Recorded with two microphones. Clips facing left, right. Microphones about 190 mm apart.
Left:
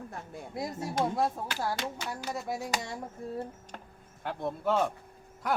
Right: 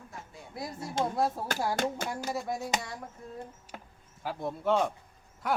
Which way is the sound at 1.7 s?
50° right (ahead or behind).